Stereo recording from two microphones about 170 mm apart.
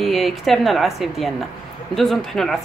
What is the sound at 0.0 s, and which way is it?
Speech, centre (ahead or behind).